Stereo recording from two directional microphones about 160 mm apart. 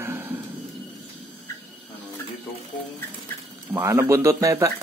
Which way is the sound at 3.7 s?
15° right (ahead or behind).